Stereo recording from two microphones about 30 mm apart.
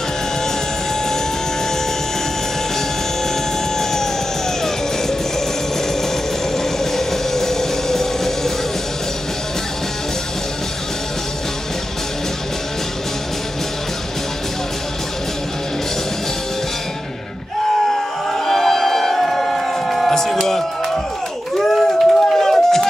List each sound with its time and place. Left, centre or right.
3.7 s music: centre
6.5 s vehicle: centre
18.4 s music: centre
19.9 s a sound: centre
20.4 s music: centre
21.5 s a sound: centre